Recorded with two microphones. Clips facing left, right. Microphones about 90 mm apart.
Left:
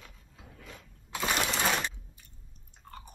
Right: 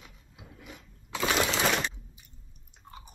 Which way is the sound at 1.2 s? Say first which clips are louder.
Right 3 dB; 70° right (ahead or behind).